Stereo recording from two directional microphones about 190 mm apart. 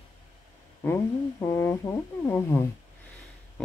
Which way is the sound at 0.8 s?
10° left (ahead or behind).